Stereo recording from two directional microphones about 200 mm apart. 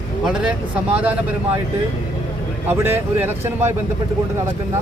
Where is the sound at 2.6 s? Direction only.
10° right (ahead or behind).